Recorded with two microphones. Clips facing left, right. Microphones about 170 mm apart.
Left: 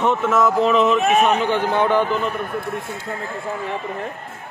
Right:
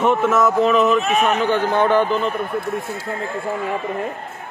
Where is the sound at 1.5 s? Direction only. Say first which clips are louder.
Right 1 dB; 15° left (ahead or behind).